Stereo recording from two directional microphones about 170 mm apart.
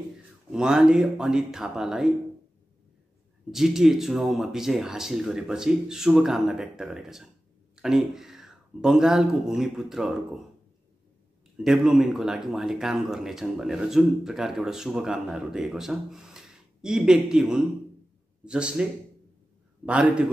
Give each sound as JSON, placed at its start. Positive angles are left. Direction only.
{"t": 0.5, "sound": "speech", "side_deg": -5}
{"t": 3.5, "sound": "speech", "side_deg": 0}
{"t": 11.5, "sound": "speech", "side_deg": -5}
{"t": 19.9, "sound": "a man's voice", "side_deg": -5}